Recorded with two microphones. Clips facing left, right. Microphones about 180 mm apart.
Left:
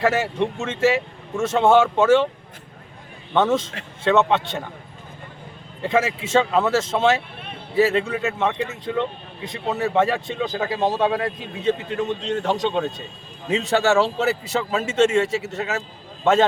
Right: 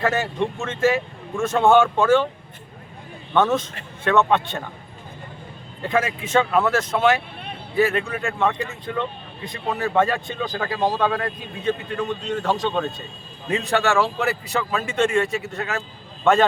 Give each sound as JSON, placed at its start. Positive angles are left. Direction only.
{"t": 0.0, "sound": "speech", "side_deg": 20}
{"t": 3.3, "sound": "speech", "side_deg": 20}
{"t": 5.8, "sound": "a man's voice", "side_deg": 25}